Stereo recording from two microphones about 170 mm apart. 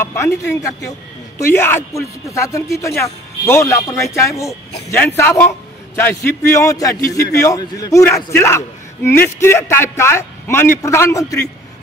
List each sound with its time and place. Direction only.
0.0 s a man's voice: 15° left (ahead or behind)